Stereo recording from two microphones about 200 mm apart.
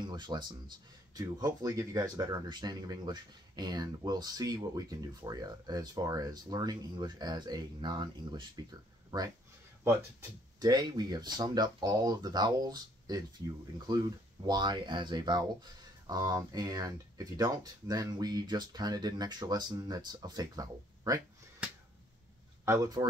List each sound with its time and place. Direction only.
0.0 s speech: 20° right (ahead or behind)
10.6 s speech: 20° right (ahead or behind)
22.7 s speech: 20° right (ahead or behind)